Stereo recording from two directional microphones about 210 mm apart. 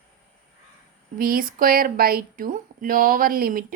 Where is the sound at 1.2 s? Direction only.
45° right (ahead or behind).